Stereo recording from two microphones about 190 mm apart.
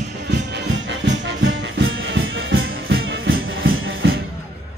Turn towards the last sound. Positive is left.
turn(degrees=-65)  # may be behind; listen again after turning